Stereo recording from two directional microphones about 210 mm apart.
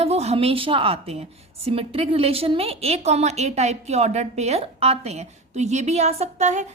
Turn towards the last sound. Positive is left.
turn(degrees=-35)  # may be behind; listen again after turning